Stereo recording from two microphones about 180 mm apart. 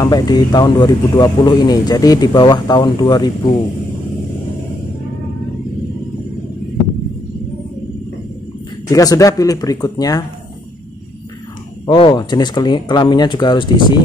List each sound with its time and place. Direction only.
0.0 s speech: 25° left (ahead or behind)
8.9 s speech: 20° left (ahead or behind)
11.8 s speech: 25° left (ahead or behind)